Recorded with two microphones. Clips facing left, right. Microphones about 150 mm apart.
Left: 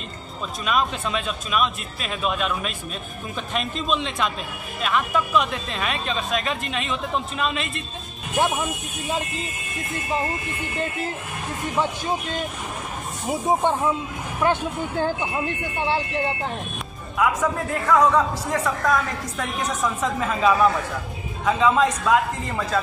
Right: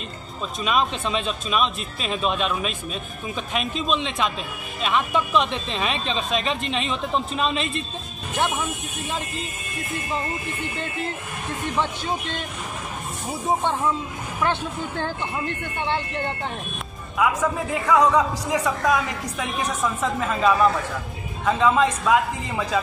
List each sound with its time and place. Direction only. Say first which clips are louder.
0.7 s speech: right 1 dB; 25° right (ahead or behind)
8.4 s speech: left 2 dB; 10° left (ahead or behind)
14.4 s a man's voice: left 3 dB; 10° left (ahead or behind)